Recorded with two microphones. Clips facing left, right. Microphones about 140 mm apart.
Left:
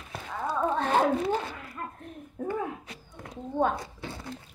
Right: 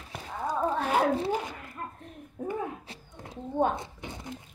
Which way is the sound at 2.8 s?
30° right (ahead or behind).